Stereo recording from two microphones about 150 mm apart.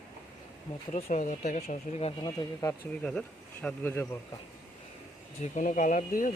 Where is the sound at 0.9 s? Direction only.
55° left (ahead or behind).